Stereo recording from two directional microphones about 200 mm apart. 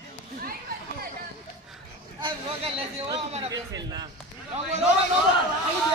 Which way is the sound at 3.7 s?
20° right (ahead or behind).